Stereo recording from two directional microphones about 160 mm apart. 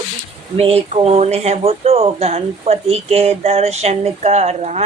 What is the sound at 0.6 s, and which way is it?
Speech, 40° right (ahead or behind).